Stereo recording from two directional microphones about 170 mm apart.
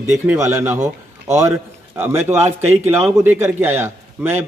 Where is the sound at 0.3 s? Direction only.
15° right (ahead or behind).